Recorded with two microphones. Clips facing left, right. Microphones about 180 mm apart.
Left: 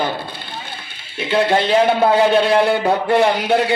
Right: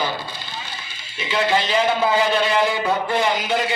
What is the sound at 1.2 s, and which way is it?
A man's voice, 60° left (ahead or behind).